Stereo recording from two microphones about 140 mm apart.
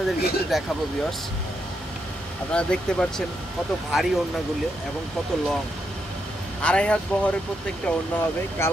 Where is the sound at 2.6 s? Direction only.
5° left (ahead or behind).